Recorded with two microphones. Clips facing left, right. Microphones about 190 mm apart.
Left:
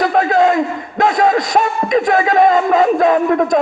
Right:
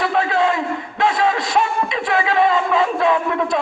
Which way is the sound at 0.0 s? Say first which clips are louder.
Left 5 dB; 40° left (ahead or behind).